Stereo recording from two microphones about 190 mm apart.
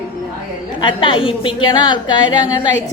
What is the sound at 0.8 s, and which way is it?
A woman's voice, 25° left (ahead or behind).